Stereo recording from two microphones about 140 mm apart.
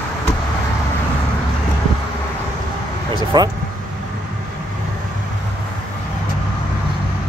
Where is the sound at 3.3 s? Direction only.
30° right (ahead or behind).